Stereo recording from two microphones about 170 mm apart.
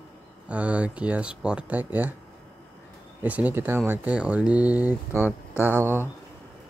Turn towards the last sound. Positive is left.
turn(degrees=-15)  # may be behind; listen again after turning